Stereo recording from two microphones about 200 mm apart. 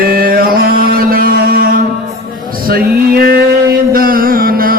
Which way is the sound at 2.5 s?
50° right (ahead or behind).